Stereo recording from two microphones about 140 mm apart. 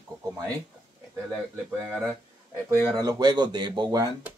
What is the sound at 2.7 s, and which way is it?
Speech, 25° right (ahead or behind).